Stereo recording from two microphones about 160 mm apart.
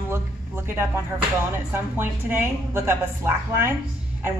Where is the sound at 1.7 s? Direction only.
15° right (ahead or behind).